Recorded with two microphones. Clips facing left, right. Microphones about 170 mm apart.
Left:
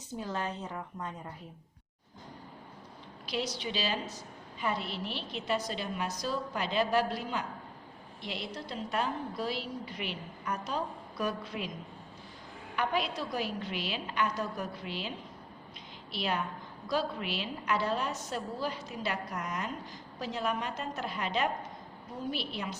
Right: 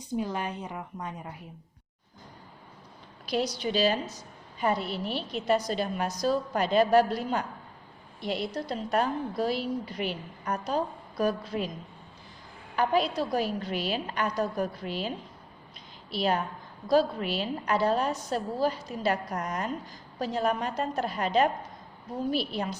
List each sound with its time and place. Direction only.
0.1 s a woman's voice: 15° right (ahead or behind)
3.2 s a woman's voice: 40° right (ahead or behind)
12.7 s a woman's voice: 35° right (ahead or behind)
16.1 s a woman's voice: 40° right (ahead or behind)